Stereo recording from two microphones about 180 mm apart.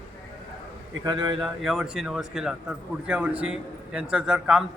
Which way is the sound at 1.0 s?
25° right (ahead or behind).